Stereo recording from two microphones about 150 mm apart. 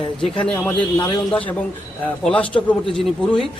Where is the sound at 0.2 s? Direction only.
5° left (ahead or behind).